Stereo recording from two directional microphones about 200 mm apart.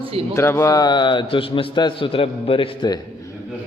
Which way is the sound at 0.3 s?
15° left (ahead or behind).